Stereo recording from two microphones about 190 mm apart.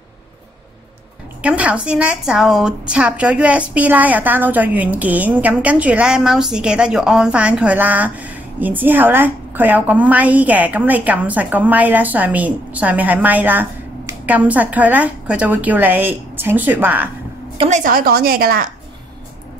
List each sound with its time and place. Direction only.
1.4 s a woman's voice: 5° right (ahead or behind)
17.6 s a woman's voice: 40° right (ahead or behind)